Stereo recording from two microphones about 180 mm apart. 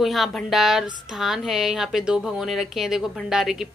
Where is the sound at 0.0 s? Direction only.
Centre (ahead or behind).